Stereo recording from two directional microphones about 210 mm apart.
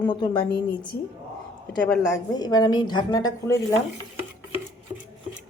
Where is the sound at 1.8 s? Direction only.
5° left (ahead or behind).